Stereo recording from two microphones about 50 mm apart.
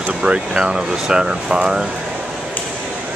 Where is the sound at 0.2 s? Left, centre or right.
Centre.